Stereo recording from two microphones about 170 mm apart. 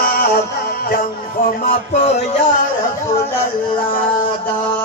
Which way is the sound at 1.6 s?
55° left (ahead or behind).